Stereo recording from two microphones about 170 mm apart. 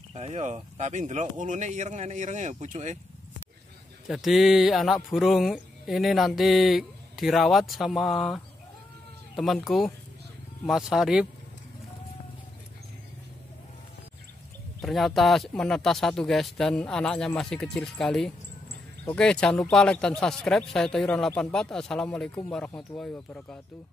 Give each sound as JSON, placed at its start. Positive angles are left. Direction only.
{"t": 0.1, "sound": "speech", "side_deg": -40}
{"t": 4.1, "sound": "speech", "side_deg": 0}
{"t": 9.4, "sound": "speech", "side_deg": 0}
{"t": 14.8, "sound": "speech", "side_deg": 0}